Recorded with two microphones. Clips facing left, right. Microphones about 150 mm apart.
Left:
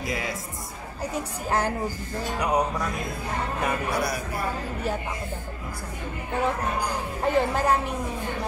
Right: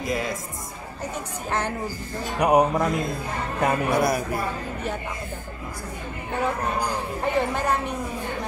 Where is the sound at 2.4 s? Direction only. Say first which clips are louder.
Right 7 dB; 60° right (ahead or behind).